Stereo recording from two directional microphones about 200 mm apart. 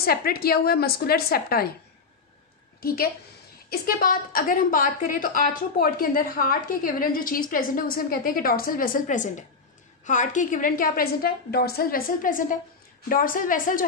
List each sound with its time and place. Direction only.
0.0 s a woman's voice: 50° left (ahead or behind)
2.8 s a woman's voice: 50° left (ahead or behind)